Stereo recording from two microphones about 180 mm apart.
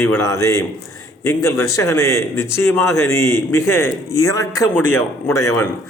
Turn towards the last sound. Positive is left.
turn(degrees=15)  # may be behind; listen again after turning